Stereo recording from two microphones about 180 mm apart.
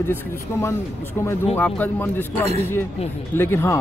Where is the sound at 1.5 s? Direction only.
10° left (ahead or behind).